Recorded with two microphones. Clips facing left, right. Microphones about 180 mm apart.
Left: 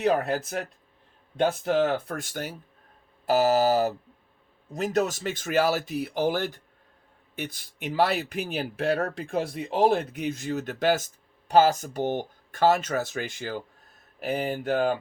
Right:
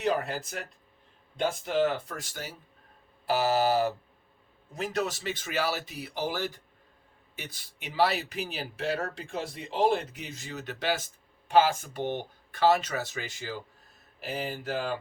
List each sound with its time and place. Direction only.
0.0 s speech: 60° left (ahead or behind)
3.2 s a sound: 40° left (ahead or behind)
4.7 s speech: 45° left (ahead or behind)